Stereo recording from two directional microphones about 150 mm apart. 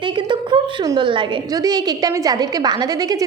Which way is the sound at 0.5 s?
35° right (ahead or behind).